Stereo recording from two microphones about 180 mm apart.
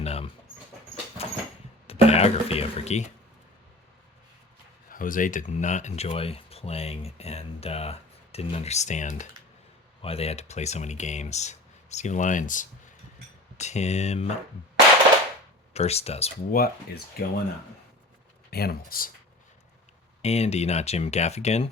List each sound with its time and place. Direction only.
0.0 s speech: 35° left (ahead or behind)
1.2 s vehicle: 35° left (ahead or behind)
1.9 s speech: 35° left (ahead or behind)
4.9 s speech: 50° left (ahead or behind)
15.7 s speech: 35° left (ahead or behind)
16.5 s speech: 55° left (ahead or behind)
18.5 s speech: 60° left (ahead or behind)
20.2 s speech: 35° left (ahead or behind)